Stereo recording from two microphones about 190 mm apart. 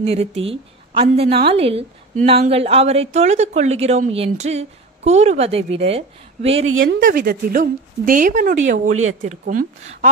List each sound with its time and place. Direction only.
0.0 s a woman's voice: 30° right (ahead or behind)
6.6 s speech: 90° right
7.0 s a woman's voice: 50° right (ahead or behind)
8.8 s speech: 90° right